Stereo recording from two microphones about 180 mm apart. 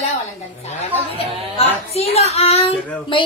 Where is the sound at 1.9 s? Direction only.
35° left (ahead or behind).